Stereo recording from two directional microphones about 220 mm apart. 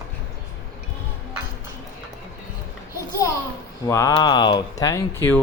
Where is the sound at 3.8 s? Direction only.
15° left (ahead or behind).